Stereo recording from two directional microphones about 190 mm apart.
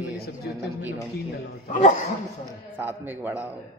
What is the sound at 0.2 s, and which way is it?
A man's voice, 55° left (ahead or behind).